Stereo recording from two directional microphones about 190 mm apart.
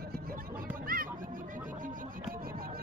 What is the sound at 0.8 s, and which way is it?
Chatter, 45° right (ahead or behind).